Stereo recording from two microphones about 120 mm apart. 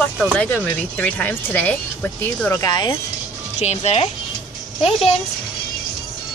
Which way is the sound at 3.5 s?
65° left (ahead or behind).